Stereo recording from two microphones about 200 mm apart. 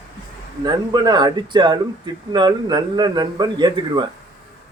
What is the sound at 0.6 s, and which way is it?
Speech, 20° right (ahead or behind).